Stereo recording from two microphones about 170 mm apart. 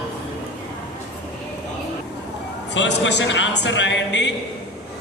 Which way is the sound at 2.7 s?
90° left.